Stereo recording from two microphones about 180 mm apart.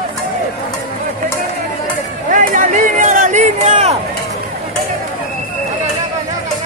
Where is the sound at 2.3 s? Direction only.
45° right (ahead or behind).